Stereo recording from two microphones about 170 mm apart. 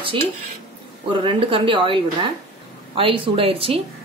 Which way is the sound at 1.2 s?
30° right (ahead or behind).